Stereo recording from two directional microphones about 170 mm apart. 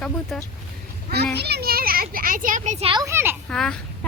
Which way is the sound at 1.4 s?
70° right (ahead or behind).